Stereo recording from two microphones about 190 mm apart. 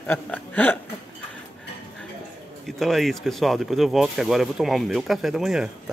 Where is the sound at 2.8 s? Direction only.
Centre (ahead or behind).